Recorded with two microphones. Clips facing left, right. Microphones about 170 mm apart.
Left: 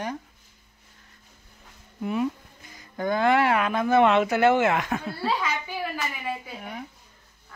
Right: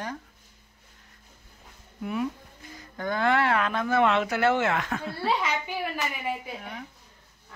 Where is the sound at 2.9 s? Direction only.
15° left (ahead or behind).